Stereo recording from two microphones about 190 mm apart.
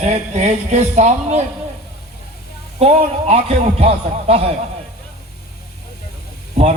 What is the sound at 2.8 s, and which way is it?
Speech, 35° right (ahead or behind).